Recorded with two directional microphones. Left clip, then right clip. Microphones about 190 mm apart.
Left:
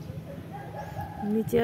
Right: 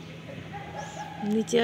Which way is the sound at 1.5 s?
Centre (ahead or behind).